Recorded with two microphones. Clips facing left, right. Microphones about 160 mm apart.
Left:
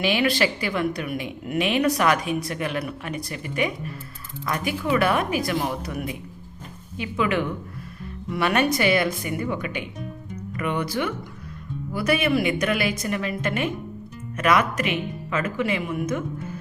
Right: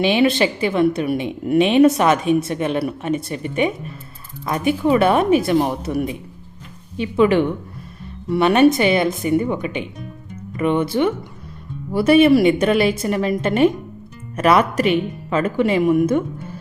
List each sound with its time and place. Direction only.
0.0 s a woman's voice: 25° right (ahead or behind)